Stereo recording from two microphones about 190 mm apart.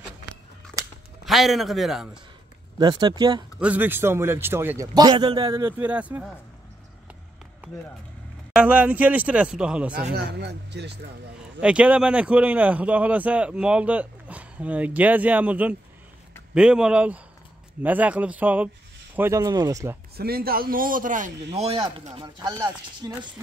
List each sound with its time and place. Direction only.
1.2 s a man's voice: centre (ahead or behind)
2.8 s speech: 20° right (ahead or behind)
3.5 s a man's voice: 5° right (ahead or behind); by 5.8 s 25° right (ahead or behind)
5.8 s a man's voice: 5° right (ahead or behind)
8.5 s a man's voice: 10° right (ahead or behind)
10.1 s speech: 60° right (ahead or behind)
11.6 s a man's voice: 5° right (ahead or behind)
20.2 s a man's voice: 55° right (ahead or behind)
21.5 s speech: 30° right (ahead or behind)